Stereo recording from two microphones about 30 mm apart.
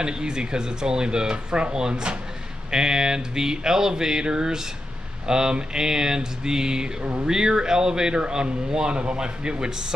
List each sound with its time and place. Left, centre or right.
0.0 s speech: right